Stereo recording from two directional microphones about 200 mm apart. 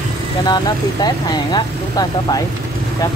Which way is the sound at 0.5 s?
20° left (ahead or behind).